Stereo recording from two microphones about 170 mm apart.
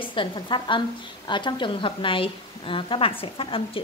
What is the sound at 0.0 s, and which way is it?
A woman's voice, 30° left (ahead or behind).